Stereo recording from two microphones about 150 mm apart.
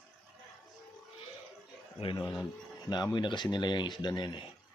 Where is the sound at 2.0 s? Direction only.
35° left (ahead or behind).